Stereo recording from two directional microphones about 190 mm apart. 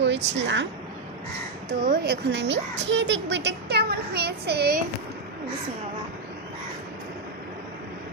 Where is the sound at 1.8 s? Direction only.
55° right (ahead or behind).